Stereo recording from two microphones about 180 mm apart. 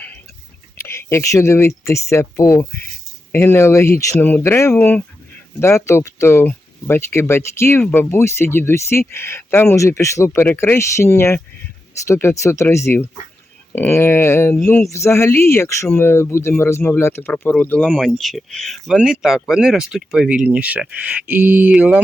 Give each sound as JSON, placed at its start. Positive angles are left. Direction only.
{"t": 0.8, "sound": "speech", "side_deg": 15}